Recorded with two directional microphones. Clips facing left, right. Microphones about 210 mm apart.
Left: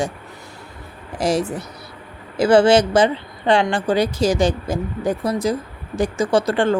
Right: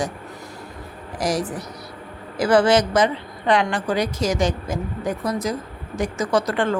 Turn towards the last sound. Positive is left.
turn(degrees=30)  # may be behind; listen again after turning